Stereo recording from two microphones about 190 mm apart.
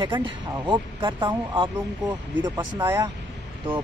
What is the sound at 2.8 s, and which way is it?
Speech, 15° right (ahead or behind).